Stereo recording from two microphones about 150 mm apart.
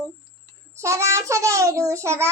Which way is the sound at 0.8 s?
20° right (ahead or behind).